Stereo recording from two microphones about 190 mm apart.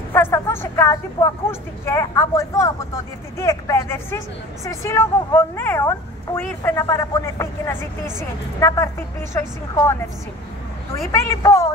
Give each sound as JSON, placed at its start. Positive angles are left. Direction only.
{"t": 0.1, "sound": "speech", "side_deg": 10}
{"t": 11.1, "sound": "speech", "side_deg": 15}